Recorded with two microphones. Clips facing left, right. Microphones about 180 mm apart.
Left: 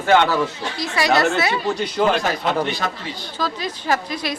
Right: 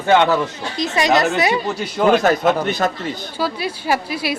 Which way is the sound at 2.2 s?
50° right (ahead or behind).